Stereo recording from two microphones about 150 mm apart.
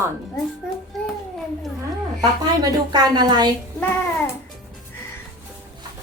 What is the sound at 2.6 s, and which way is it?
Speech, 25° right (ahead or behind).